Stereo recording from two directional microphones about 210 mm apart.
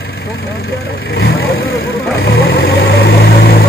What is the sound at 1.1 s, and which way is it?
Speech, 50° left (ahead or behind).